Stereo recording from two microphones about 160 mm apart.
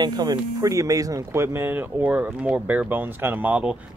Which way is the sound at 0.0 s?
25° right (ahead or behind).